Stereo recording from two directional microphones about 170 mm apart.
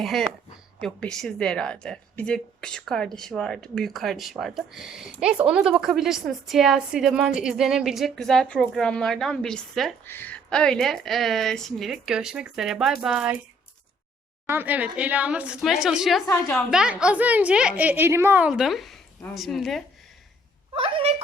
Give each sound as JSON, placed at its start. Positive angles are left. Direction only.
{"t": 0.0, "sound": "a woman's voice", "side_deg": 0}
{"t": 14.4, "sound": "a woman's voice", "side_deg": -10}
{"t": 20.7, "sound": "speech", "side_deg": -35}